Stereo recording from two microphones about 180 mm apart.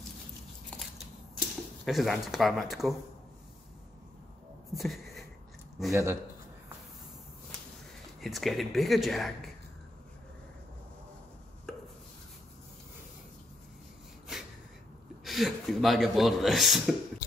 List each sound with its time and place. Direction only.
1.9 s a man's voice: centre (ahead or behind)
4.7 s a sound: centre (ahead or behind)
5.9 s a man's voice: 15° right (ahead or behind)
8.2 s a man's voice: centre (ahead or behind)
15.2 s a man's voice: centre (ahead or behind)